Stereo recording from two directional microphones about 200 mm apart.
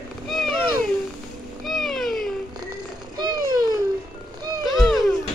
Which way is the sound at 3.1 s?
20° right (ahead or behind).